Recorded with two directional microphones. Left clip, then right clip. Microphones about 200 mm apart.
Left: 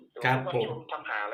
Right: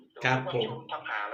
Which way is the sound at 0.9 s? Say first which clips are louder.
Left 1 dB; 45° left (ahead or behind).